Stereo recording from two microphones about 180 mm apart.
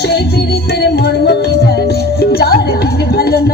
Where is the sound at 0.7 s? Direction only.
65° left (ahead or behind).